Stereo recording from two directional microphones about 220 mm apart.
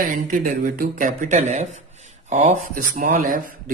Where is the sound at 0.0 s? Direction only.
40° right (ahead or behind).